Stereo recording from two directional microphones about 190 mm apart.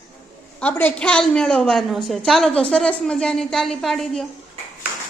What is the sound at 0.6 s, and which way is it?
A woman's voice, 10° left (ahead or behind).